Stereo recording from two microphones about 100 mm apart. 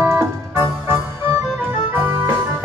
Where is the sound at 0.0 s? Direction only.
25° right (ahead or behind).